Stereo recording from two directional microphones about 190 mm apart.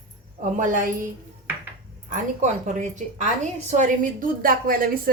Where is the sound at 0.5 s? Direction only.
45° right (ahead or behind).